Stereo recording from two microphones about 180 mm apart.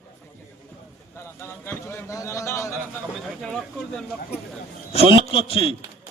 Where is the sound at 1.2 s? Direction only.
15° left (ahead or behind).